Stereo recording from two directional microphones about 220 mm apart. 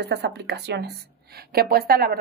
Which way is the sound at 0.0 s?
50° right (ahead or behind).